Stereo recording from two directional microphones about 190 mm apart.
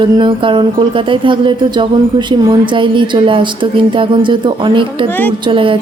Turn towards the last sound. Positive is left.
turn(degrees=-25)  # may be behind; listen again after turning